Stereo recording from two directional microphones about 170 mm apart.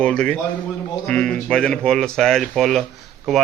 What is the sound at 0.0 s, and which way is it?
A man's voice, 5° left (ahead or behind).